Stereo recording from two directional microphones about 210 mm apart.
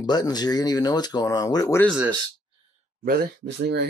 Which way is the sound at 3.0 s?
45° right (ahead or behind).